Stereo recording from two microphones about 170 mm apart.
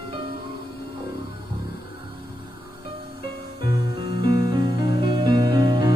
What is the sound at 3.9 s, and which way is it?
Music, 25° right (ahead or behind).